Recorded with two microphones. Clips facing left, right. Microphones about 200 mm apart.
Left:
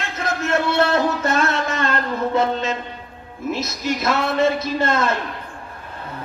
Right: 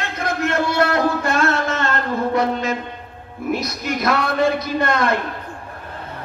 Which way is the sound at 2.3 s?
25° left (ahead or behind).